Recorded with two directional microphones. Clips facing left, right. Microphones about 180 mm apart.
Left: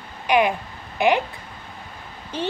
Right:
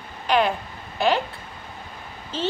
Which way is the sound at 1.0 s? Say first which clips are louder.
Left 2 dB; 15° left (ahead or behind).